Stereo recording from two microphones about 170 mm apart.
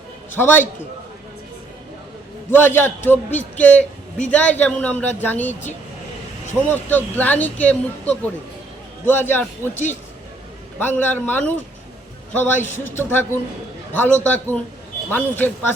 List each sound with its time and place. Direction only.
0.3 s a man's voice: 10° left (ahead or behind)
2.5 s a man's voice: 15° left (ahead or behind)
6.7 s a man's voice: 10° left (ahead or behind)
9.7 s speech: 45° left (ahead or behind)
10.8 s a man's voice: 10° left (ahead or behind)
12.7 s a man's voice: 15° left (ahead or behind)